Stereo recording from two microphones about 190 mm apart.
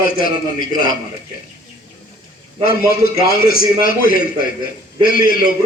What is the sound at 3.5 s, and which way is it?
A man's voice, 50° left (ahead or behind).